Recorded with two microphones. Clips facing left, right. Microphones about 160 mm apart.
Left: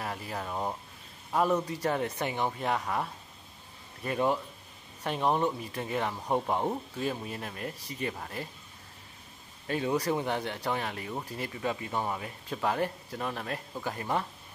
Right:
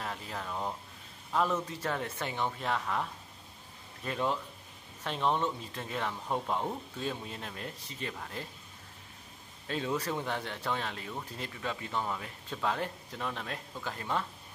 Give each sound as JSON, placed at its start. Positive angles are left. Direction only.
{"t": 0.0, "sound": "speech", "side_deg": 10}
{"t": 7.0, "sound": "speech", "side_deg": 5}
{"t": 9.7, "sound": "speech", "side_deg": 10}
{"t": 11.7, "sound": "speech", "side_deg": 20}
{"t": 12.4, "sound": "speech", "side_deg": 10}